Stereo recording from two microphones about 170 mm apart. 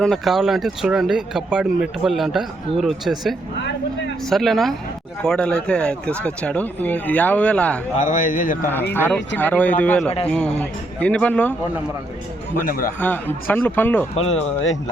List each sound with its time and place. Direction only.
0.0 s speech: centre (ahead or behind)
7.9 s speech: 50° left (ahead or behind)
8.6 s speech: 10° left (ahead or behind)
12.6 s a man's voice: 55° left (ahead or behind)
13.0 s speech: 10° left (ahead or behind)
14.2 s speech: 40° left (ahead or behind)